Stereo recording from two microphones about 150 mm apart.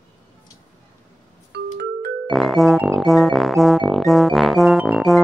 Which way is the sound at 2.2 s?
Centre (ahead or behind).